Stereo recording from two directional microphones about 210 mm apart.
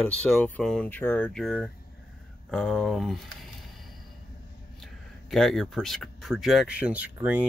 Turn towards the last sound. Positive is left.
turn(degrees=-5)  # may be behind; listen again after turning